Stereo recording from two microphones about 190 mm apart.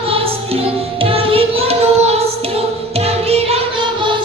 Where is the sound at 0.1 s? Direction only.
30° right (ahead or behind).